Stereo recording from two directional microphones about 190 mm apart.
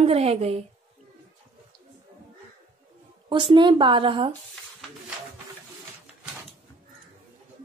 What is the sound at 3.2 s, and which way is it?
Speech, 25° right (ahead or behind).